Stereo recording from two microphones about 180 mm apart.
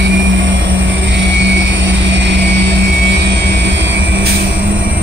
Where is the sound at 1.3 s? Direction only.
85° right.